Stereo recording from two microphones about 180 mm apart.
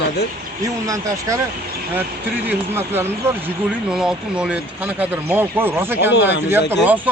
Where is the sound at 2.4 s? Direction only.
10° right (ahead or behind).